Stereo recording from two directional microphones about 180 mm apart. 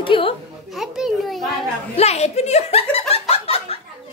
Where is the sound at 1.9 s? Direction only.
35° left (ahead or behind).